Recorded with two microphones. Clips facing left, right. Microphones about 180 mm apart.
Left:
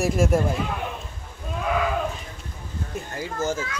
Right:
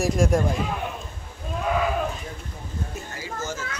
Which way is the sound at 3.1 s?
55° left (ahead or behind).